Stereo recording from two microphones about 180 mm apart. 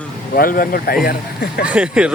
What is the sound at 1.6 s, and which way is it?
Speech, 5° right (ahead or behind).